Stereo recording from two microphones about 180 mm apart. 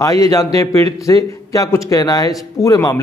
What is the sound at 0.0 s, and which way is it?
A man's voice, 20° left (ahead or behind).